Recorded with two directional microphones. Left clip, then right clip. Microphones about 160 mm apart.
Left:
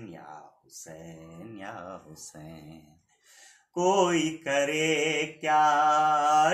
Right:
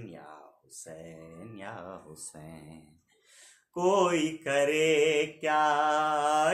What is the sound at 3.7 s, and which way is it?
Mantra, 25° right (ahead or behind).